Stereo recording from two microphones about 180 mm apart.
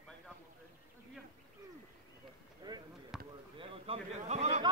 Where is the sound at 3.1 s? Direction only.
Centre (ahead or behind).